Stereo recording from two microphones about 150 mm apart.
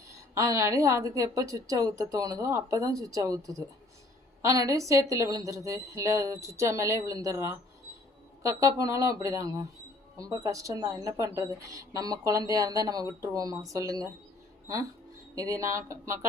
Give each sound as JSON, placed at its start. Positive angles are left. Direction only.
{"t": 0.1, "sound": "a woman's voice", "side_deg": -20}
{"t": 15.4, "sound": "a woman's voice", "side_deg": -20}